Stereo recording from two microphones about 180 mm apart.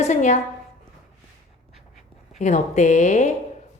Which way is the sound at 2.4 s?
40° left (ahead or behind).